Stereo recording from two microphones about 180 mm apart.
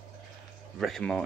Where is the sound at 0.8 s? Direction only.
Centre (ahead or behind).